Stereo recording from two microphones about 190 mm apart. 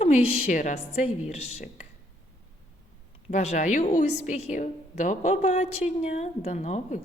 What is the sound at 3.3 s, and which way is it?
A woman's voice, 35° left (ahead or behind).